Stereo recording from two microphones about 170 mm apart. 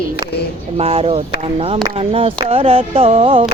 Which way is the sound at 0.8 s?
35° right (ahead or behind).